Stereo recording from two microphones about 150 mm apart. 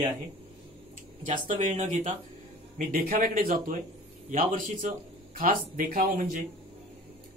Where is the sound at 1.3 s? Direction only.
55° right (ahead or behind).